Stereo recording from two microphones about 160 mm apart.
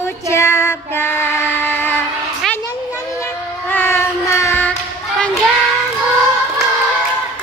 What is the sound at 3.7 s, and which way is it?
Child singing, 15° left (ahead or behind).